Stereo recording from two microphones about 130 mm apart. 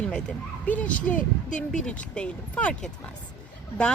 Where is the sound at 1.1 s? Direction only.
75° left (ahead or behind).